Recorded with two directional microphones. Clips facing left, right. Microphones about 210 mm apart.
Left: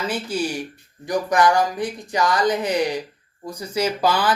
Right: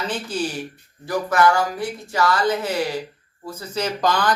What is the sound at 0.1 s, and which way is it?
Speech, 10° left (ahead or behind).